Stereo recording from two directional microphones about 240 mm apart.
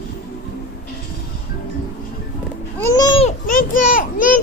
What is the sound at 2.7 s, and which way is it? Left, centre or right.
Babbling, centre.